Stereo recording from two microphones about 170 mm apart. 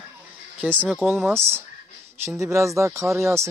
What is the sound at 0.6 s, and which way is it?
Speech, 10° right (ahead or behind).